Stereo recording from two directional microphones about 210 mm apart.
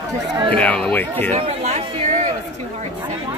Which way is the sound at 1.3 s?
30° right (ahead or behind).